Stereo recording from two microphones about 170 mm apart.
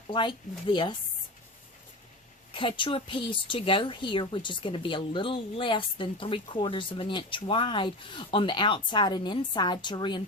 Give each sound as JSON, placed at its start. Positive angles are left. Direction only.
{"t": 0.1, "sound": "speech", "side_deg": 30}
{"t": 2.5, "sound": "speech", "side_deg": 30}